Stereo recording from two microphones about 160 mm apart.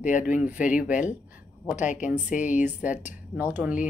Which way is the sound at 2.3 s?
50° left (ahead or behind).